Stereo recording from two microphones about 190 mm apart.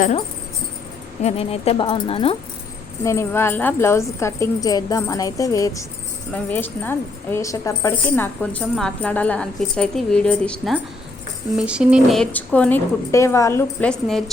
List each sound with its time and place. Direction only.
1.2 s speech: 30° left (ahead or behind)
3.0 s a woman's voice: 15° left (ahead or behind)
11.5 s a woman's voice: 5° right (ahead or behind)